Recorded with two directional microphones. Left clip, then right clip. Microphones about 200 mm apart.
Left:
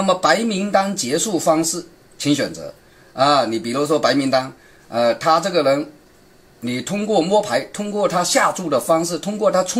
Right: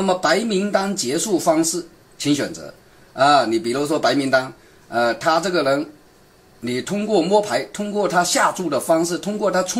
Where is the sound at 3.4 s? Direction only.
25° left (ahead or behind).